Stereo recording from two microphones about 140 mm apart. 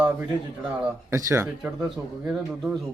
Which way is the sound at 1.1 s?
20° right (ahead or behind).